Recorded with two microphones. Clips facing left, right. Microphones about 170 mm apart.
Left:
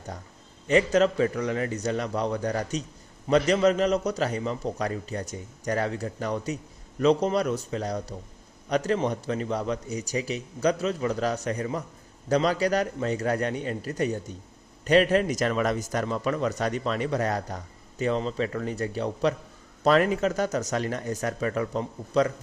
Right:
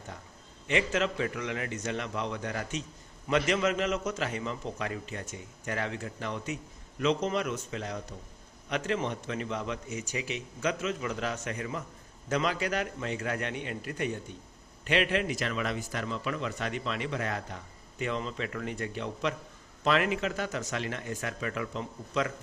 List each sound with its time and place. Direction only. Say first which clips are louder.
0.7 s a man's voice: left 8 dB; 40° left (ahead or behind)